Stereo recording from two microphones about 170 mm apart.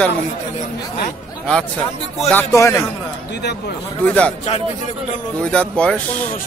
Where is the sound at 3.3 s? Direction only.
80° left.